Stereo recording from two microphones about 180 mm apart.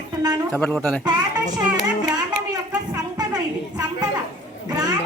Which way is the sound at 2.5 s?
20° right (ahead or behind).